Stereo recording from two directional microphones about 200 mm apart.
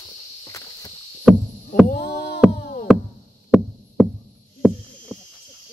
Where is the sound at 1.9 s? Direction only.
50° left (ahead or behind).